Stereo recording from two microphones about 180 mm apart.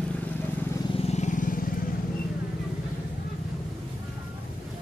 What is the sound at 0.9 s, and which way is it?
Vehicle, 40° left (ahead or behind).